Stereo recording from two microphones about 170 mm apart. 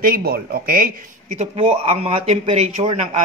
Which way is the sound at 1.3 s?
35° right (ahead or behind).